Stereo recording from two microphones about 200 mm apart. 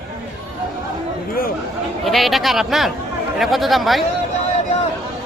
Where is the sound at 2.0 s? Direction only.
Centre (ahead or behind).